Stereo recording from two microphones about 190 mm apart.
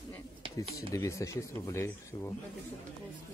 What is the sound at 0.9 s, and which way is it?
Speech, 15° left (ahead or behind).